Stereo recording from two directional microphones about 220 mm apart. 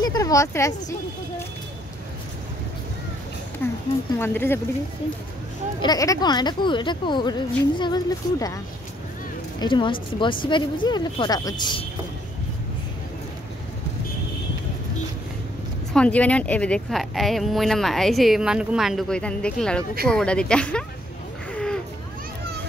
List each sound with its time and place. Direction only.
0.0 s speech: 15° left (ahead or behind)
3.6 s speech: 10° left (ahead or behind)
5.8 s speech: 15° left (ahead or behind)
9.6 s speech: 20° left (ahead or behind)
15.9 s speech: 5° left (ahead or behind)
21.5 s a sound: 5° left (ahead or behind)